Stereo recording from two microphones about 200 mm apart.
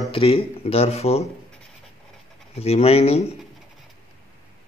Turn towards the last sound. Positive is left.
turn(degrees=30)  # may be behind; listen again after turning